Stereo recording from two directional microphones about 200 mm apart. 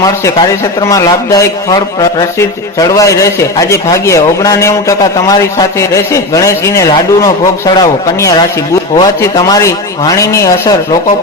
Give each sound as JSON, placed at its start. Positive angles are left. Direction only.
{"t": 0.0, "sound": "a man's voice", "side_deg": 15}